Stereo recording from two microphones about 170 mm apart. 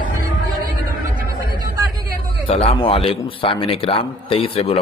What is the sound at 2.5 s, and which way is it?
A man's voice, 35° left (ahead or behind).